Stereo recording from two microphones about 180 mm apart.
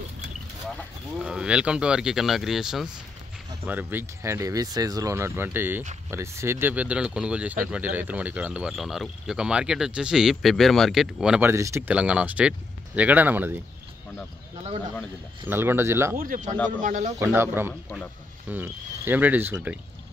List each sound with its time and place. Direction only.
1.2 s speech: 5° right (ahead or behind)
11.5 s speech: 15° right (ahead or behind)
15.4 s speech: 10° right (ahead or behind)
16.2 s speech: 45° right (ahead or behind)
16.5 s speech: 10° left (ahead or behind)
16.8 s speech: 45° right (ahead or behind)
17.2 s speech: 10° right (ahead or behind)